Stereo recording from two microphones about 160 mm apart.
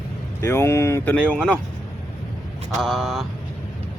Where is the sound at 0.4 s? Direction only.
15° left (ahead or behind).